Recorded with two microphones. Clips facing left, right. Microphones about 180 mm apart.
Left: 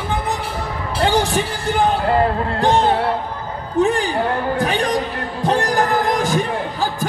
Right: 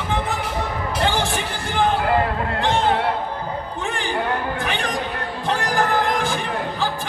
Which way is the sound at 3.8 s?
40° left (ahead or behind).